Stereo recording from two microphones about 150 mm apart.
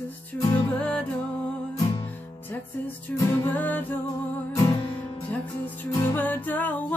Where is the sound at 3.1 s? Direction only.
15° left (ahead or behind).